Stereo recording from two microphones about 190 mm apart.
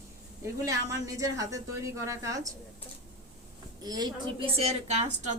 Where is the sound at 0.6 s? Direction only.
15° right (ahead or behind).